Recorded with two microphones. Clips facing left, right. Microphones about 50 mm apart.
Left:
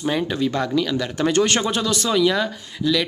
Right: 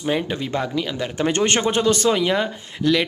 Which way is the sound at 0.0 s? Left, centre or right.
Right.